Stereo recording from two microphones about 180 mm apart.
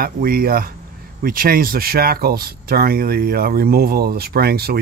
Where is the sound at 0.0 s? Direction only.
55° right (ahead or behind).